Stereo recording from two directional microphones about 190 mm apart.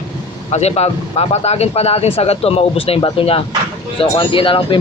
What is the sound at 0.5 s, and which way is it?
Speech, 35° left (ahead or behind).